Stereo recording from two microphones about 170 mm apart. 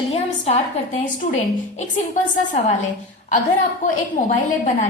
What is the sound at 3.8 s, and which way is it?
Speech, 45° left (ahead or behind).